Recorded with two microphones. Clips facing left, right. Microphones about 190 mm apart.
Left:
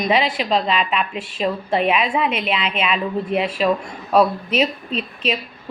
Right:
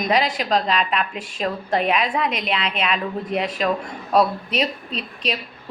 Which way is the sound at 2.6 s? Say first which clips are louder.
Left 2 dB; 35° right (ahead or behind).